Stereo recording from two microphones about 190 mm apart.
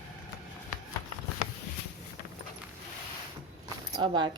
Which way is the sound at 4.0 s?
25° right (ahead or behind).